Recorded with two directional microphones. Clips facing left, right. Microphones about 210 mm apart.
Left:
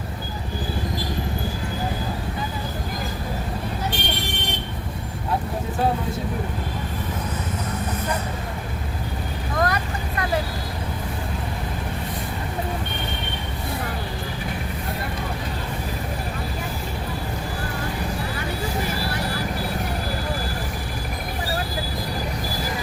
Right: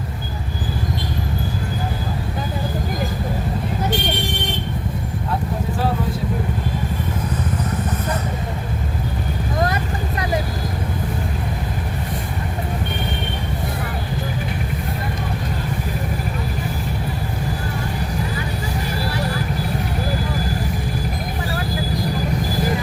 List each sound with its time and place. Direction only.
9.6 s vehicle: 25° right (ahead or behind)